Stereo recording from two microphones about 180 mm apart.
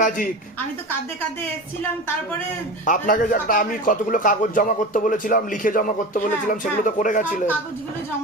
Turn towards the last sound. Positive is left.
turn(degrees=45)  # may be behind; listen again after turning